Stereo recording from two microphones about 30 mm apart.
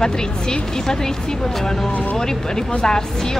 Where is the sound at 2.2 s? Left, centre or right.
Left.